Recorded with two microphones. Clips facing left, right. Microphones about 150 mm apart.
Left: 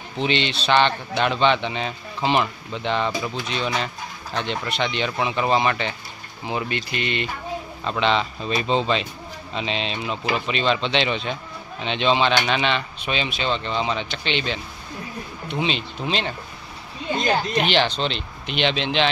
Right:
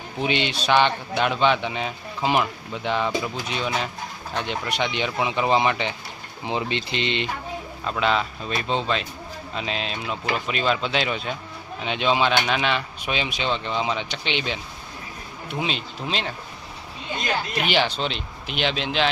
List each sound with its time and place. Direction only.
0.2 s speech: 10° right (ahead or behind)
7.8 s speech: 5° right (ahead or behind)
17.6 s speech: 10° right (ahead or behind)